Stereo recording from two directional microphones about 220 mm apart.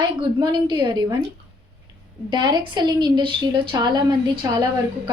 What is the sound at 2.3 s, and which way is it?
A woman's voice, 20° right (ahead or behind).